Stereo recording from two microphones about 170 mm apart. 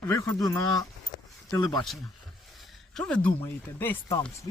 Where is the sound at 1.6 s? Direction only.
Centre (ahead or behind).